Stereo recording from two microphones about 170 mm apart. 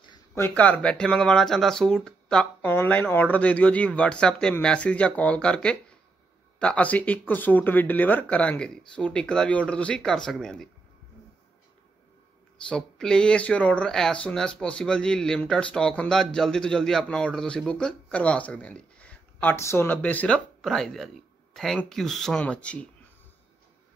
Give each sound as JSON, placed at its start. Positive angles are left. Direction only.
{"t": 0.0, "sound": "a sound", "side_deg": 25}
{"t": 0.4, "sound": "speech", "side_deg": 10}
{"t": 12.6, "sound": "speech", "side_deg": 5}